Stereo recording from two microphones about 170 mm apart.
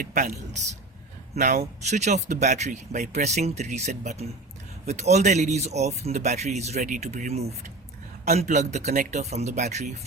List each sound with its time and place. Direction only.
0.0 s speech: 55° right (ahead or behind)